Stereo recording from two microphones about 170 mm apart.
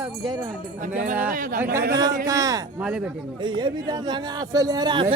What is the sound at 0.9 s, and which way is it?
Speech, 50° right (ahead or behind).